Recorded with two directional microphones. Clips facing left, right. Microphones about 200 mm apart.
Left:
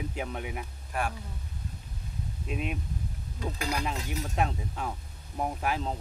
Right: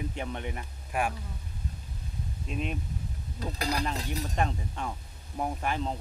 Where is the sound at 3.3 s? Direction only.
35° right (ahead or behind).